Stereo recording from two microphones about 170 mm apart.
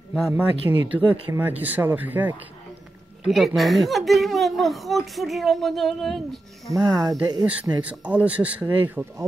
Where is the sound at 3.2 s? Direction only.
Centre (ahead or behind).